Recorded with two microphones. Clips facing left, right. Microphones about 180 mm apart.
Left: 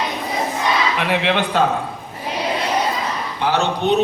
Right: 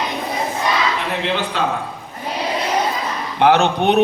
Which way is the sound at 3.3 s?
65° right (ahead or behind).